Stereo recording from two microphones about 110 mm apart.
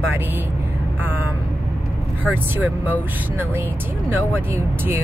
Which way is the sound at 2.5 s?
20° right (ahead or behind).